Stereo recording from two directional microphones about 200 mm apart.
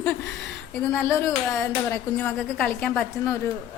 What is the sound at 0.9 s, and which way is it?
A woman's voice, 10° left (ahead or behind).